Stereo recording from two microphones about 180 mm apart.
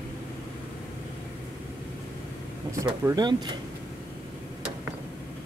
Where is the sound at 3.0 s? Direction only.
20° right (ahead or behind).